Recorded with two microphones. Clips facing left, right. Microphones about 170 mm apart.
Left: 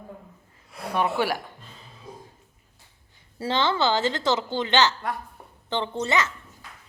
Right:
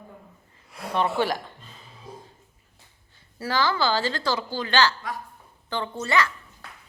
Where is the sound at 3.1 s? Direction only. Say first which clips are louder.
Left 2 dB; 20° left (ahead or behind).